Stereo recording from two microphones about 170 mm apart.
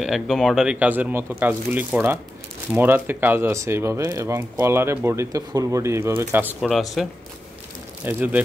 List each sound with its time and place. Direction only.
0.0 s speech: centre (ahead or behind)